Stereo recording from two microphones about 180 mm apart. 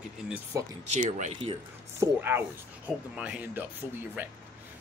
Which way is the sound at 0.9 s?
45° right (ahead or behind).